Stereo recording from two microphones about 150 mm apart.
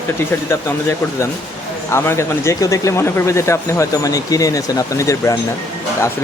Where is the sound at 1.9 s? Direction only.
15° left (ahead or behind).